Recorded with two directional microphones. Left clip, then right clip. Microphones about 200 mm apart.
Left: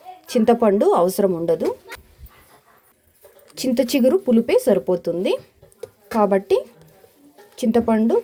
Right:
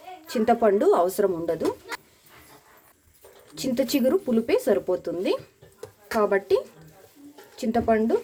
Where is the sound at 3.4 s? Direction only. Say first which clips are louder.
Left 5 dB; 30° left (ahead or behind).